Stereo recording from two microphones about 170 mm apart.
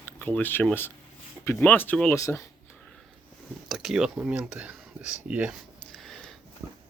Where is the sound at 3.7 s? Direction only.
Centre (ahead or behind).